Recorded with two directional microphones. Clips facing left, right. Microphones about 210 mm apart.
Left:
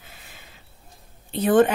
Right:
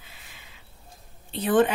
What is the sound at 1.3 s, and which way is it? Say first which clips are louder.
Speech: left 4 dB; 45° left (ahead or behind).